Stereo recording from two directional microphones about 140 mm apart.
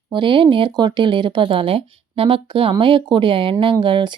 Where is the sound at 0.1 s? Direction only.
35° right (ahead or behind).